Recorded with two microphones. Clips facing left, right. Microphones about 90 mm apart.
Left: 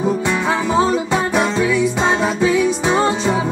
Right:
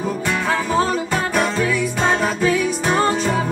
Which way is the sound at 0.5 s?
25° left (ahead or behind).